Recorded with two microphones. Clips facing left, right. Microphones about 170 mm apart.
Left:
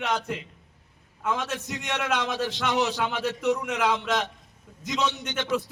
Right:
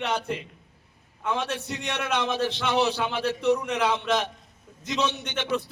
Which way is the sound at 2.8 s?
10° right (ahead or behind).